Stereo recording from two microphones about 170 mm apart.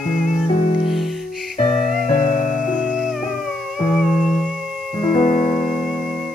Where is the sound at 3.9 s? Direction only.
Centre (ahead or behind).